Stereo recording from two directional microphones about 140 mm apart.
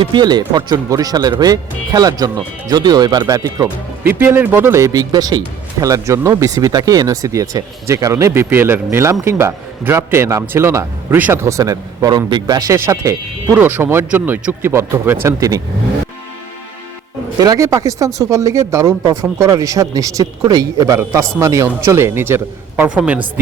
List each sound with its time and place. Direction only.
0.0 s speech: 30° right (ahead or behind)
17.3 s speech: 25° right (ahead or behind); by 23.2 s 10° right (ahead or behind)